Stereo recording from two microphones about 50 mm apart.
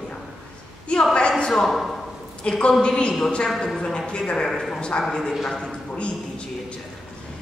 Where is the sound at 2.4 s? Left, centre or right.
Centre.